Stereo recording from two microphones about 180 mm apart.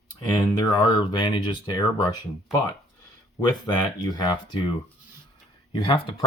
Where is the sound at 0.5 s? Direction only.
25° left (ahead or behind).